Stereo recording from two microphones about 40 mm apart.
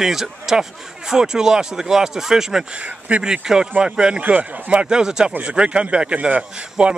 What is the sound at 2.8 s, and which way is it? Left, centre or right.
A man's voice, right.